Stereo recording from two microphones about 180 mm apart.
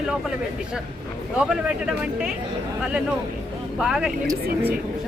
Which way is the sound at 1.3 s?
5° right (ahead or behind).